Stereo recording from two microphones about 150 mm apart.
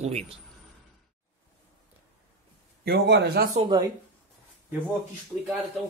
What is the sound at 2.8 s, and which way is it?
Speech, 90° right.